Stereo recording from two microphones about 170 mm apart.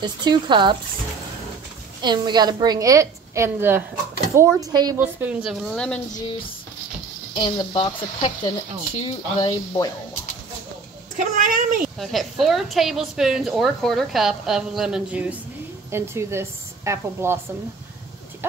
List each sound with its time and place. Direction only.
0.0 s a woman's voice: 25° right (ahead or behind)
2.0 s a woman's voice: 25° right (ahead or behind)
5.0 s a woman's voice: 10° right (ahead or behind)
7.3 s speech: 25° left (ahead or behind)
11.1 s a woman's voice: 50° right (ahead or behind)
12.0 s a woman's voice: centre (ahead or behind); by 17.4 s 15° right (ahead or behind)
18.4 s speech: 15° right (ahead or behind)